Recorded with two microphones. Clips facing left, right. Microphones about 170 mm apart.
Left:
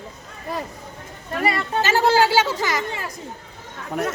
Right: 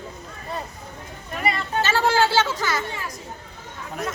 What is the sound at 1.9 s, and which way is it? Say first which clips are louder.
Speech: left 3 dB; 15° left (ahead or behind).